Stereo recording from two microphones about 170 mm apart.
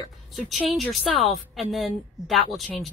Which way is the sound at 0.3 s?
Centre (ahead or behind).